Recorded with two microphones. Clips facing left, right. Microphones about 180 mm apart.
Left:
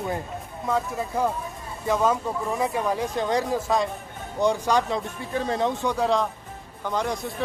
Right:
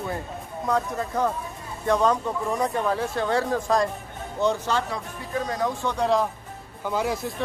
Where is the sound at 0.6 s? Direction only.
Centre (ahead or behind).